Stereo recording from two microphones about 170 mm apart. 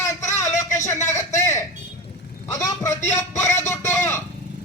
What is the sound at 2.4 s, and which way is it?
Vehicle, 20° left (ahead or behind).